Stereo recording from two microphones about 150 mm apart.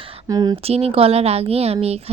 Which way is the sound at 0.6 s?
40° right (ahead or behind).